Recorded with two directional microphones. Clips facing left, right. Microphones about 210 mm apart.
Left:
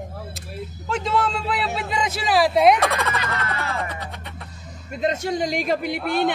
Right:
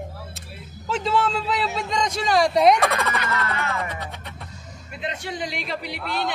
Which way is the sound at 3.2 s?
30° left (ahead or behind).